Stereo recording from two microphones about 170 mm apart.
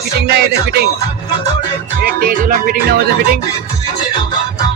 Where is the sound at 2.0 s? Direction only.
60° right (ahead or behind).